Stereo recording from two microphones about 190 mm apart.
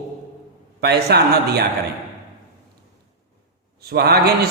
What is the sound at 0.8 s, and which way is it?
Speech, 60° right (ahead or behind).